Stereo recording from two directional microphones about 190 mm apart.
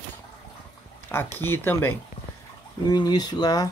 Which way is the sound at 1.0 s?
10° left (ahead or behind).